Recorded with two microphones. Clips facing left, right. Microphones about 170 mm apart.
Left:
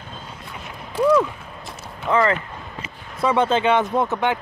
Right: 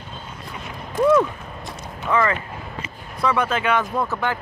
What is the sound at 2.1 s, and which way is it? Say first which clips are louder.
Speech: left 2 dB; 15° left (ahead or behind).